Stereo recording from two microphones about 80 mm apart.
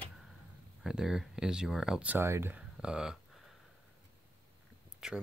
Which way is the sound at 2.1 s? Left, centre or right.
Right.